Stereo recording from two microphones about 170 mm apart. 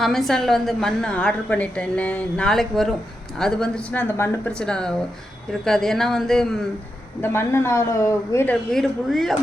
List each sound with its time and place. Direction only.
0.0 s a woman's voice: centre (ahead or behind)
7.2 s speech: 15° left (ahead or behind)
8.7 s a woman's voice: centre (ahead or behind)